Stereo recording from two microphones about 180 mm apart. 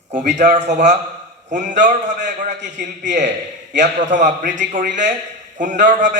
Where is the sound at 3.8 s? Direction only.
40° right (ahead or behind).